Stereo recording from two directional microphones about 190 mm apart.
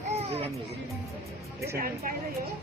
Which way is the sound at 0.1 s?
35° right (ahead or behind).